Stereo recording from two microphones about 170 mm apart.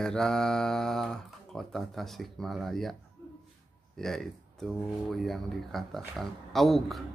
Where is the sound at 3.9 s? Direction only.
Centre (ahead or behind).